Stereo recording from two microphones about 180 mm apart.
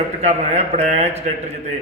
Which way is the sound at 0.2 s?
35° right (ahead or behind).